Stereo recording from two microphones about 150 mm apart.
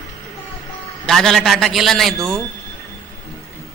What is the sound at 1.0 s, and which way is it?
A man's voice, 5° left (ahead or behind).